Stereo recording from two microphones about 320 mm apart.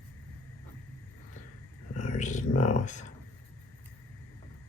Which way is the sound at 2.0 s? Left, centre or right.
Left.